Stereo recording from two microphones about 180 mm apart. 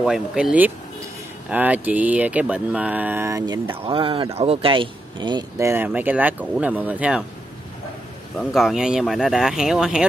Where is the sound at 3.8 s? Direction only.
30° right (ahead or behind); by 7.2 s 10° right (ahead or behind).